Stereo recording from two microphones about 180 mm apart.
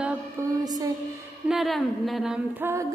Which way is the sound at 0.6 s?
20° right (ahead or behind).